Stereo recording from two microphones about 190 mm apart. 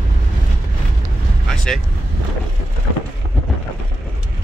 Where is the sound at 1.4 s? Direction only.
Centre (ahead or behind).